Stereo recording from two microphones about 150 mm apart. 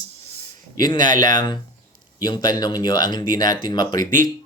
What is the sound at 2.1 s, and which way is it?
Speech, 25° left (ahead or behind).